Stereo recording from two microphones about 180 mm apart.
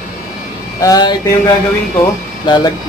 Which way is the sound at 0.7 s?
20° left (ahead or behind).